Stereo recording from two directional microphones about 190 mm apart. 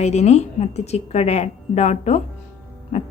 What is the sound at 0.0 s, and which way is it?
A woman's voice, 35° left (ahead or behind).